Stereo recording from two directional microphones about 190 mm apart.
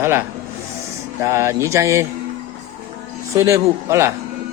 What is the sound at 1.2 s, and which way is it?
Speech, 15° right (ahead or behind).